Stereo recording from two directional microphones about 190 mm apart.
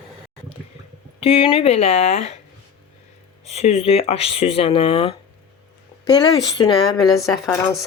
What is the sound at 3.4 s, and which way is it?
Speech, 35° left (ahead or behind).